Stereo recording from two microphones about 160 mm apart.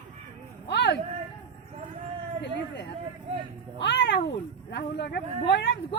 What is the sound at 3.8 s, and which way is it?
Cat, 90° left.